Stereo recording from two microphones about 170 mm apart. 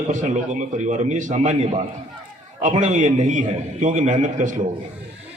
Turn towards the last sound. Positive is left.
turn(degrees=-45)  # may be behind; listen again after turning